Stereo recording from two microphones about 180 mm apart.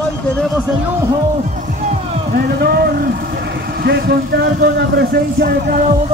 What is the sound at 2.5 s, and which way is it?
Speech, 60° right (ahead or behind).